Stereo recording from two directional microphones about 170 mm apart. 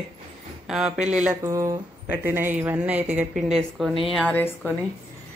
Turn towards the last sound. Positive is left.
turn(degrees=10)  # may be behind; listen again after turning